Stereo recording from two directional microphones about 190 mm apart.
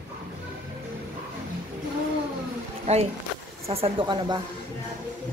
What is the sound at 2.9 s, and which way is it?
Speech, 35° right (ahead or behind).